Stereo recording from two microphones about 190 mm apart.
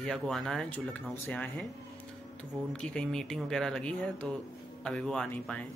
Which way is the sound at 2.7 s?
5° left (ahead or behind).